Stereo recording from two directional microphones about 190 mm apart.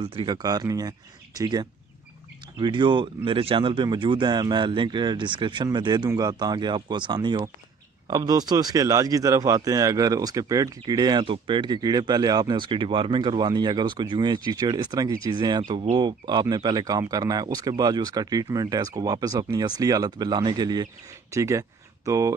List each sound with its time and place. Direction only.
0.0 s speech: 30° right (ahead or behind)